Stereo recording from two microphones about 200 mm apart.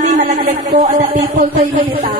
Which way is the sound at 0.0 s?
40° right (ahead or behind).